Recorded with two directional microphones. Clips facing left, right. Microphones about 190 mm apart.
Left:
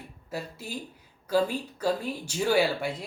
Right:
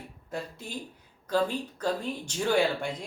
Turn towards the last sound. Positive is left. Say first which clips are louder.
# left 1 dB
turn(degrees=5)  # may be behind; listen again after turning